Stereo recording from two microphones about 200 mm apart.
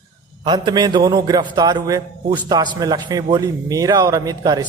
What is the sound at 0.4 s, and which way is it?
A man's voice, 20° right (ahead or behind).